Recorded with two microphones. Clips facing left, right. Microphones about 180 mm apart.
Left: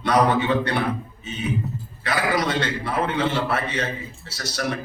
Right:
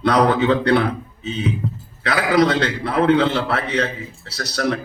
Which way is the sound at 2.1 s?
70° right (ahead or behind).